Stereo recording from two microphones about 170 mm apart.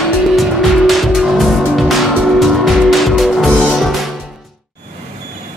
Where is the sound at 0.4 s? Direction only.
Centre (ahead or behind).